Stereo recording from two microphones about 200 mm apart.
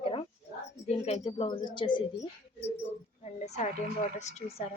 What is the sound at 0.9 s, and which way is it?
Speech, 30° left (ahead or behind).